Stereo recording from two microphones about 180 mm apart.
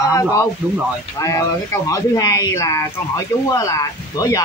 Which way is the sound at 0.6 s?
10° right (ahead or behind).